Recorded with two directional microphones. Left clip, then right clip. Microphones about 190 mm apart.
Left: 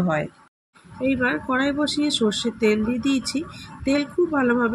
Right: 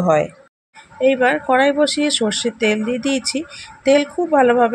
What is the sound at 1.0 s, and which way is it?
Speech, 35° right (ahead or behind).